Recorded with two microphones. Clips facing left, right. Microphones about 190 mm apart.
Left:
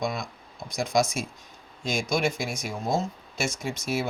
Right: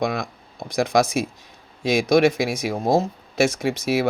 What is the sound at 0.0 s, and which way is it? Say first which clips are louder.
Speech: right 6 dB; 60° right (ahead or behind).